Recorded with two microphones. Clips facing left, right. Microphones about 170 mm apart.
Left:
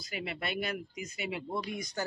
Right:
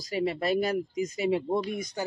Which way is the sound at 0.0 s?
35° right (ahead or behind).